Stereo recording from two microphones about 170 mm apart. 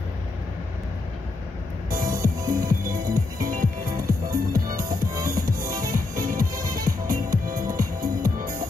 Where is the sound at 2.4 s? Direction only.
15° right (ahead or behind).